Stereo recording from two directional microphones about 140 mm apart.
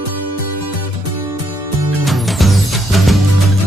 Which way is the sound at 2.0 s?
Centre (ahead or behind).